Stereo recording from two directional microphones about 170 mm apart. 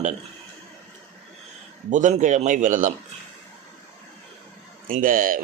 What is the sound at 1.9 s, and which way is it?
Speech, 45° right (ahead or behind).